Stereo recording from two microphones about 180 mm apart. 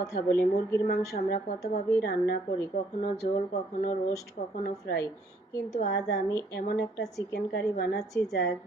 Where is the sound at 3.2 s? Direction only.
50° left (ahead or behind).